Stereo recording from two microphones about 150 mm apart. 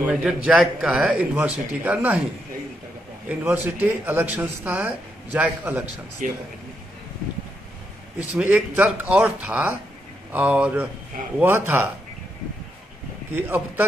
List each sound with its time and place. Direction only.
0.0 s a man's voice: 5° right (ahead or behind)
3.3 s a man's voice: 10° right (ahead or behind)
6.2 s speech: 65° right (ahead or behind)
8.4 s a man's voice: 10° right (ahead or behind)
13.3 s a man's voice: 15° right (ahead or behind)